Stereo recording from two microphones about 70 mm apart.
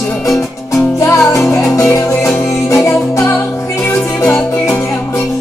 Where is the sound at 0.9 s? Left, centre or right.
Left.